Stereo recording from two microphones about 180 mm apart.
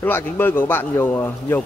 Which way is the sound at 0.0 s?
10° left (ahead or behind).